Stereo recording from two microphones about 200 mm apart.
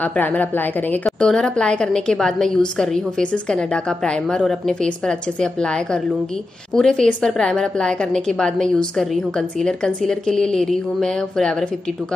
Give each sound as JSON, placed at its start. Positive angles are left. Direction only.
{"t": 0.0, "sound": "a woman's voice", "side_deg": 10}